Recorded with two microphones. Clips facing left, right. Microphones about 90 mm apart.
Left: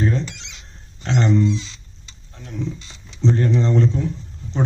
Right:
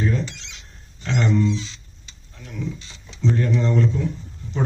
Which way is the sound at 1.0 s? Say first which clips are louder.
Left 2 dB; 30° left (ahead or behind).